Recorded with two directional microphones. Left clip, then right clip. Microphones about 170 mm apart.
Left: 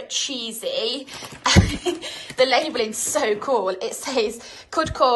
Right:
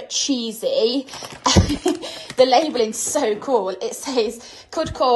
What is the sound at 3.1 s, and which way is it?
A woman's voice, 20° right (ahead or behind).